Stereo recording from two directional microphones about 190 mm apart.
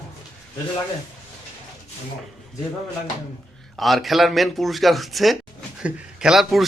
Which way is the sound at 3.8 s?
Centre (ahead or behind).